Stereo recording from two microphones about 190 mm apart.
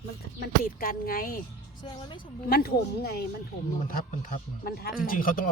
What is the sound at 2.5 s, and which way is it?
A man's voice, 55° left (ahead or behind).